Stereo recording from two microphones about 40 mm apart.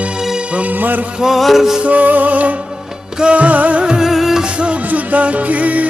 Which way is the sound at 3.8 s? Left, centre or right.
Centre.